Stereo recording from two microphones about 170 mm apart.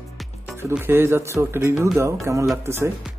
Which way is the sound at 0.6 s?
15° right (ahead or behind).